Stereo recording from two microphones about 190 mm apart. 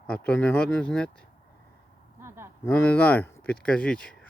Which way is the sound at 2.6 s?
10° left (ahead or behind).